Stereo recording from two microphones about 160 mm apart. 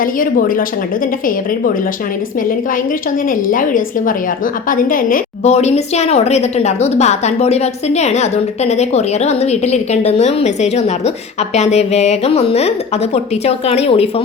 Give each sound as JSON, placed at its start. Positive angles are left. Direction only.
{"t": 0.0, "sound": "a woman's voice", "side_deg": 60}
{"t": 3.2, "sound": "a woman's voice", "side_deg": 60}
{"t": 5.4, "sound": "speech", "side_deg": 45}